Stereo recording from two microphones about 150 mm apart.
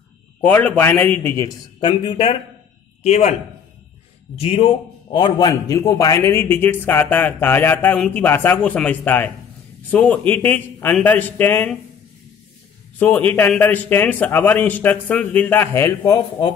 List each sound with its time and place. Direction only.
0.4 s a man's voice: 10° left (ahead or behind)
1.8 s a man's voice: 35° left (ahead or behind)
4.4 s a man's voice: 40° left (ahead or behind); by 11.8 s 10° left (ahead or behind)
13.0 s a man's voice: 10° left (ahead or behind)